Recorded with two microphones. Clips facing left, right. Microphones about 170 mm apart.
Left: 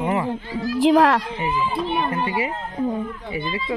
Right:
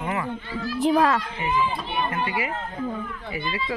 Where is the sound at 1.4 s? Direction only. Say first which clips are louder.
Left 2 dB; 35° left (ahead or behind).